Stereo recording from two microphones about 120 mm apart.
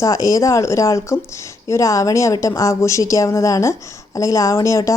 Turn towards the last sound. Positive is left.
turn(degrees=25)  # may be behind; listen again after turning